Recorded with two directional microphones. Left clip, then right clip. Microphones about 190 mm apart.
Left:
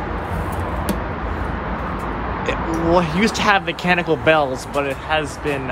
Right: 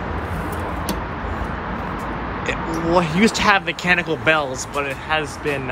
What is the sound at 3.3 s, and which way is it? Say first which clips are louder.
Speech: left 2 dB; 15° left (ahead or behind).